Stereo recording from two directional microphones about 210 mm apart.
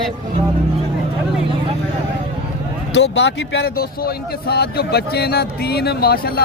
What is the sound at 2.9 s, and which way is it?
Speech, 55° left (ahead or behind).